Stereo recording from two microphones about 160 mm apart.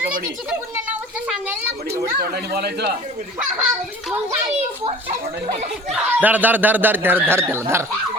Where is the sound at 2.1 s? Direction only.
80° right.